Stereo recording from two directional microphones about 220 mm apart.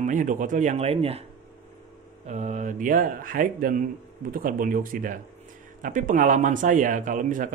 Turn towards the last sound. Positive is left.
turn(degrees=-35)  # may be behind; listen again after turning